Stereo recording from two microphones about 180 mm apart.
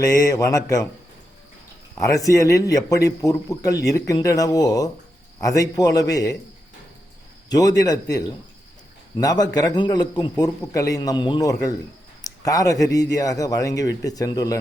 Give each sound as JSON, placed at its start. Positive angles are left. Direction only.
{"t": 0.2, "sound": "a man's voice", "side_deg": 20}
{"t": 2.0, "sound": "a man's voice", "side_deg": 20}
{"t": 7.5, "sound": "a man's voice", "side_deg": 20}
{"t": 9.1, "sound": "a man's voice", "side_deg": 20}